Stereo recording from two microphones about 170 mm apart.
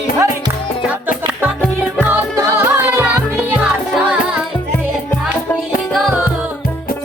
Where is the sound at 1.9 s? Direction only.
15° right (ahead or behind).